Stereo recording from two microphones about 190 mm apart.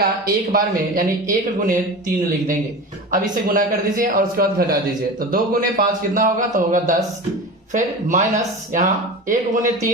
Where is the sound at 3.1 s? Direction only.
45° right (ahead or behind).